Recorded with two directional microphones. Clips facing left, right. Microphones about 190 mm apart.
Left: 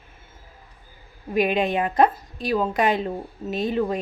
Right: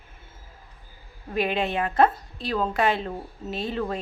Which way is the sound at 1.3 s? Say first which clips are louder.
Left 4 dB; 15° left (ahead or behind).